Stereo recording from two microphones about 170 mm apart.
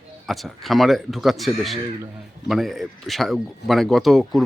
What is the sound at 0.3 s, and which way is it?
Speech, centre (ahead or behind).